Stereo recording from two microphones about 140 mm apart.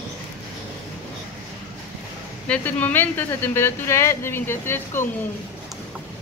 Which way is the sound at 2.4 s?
10° left (ahead or behind).